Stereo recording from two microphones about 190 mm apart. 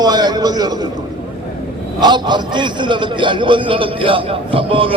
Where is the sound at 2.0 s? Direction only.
25° right (ahead or behind).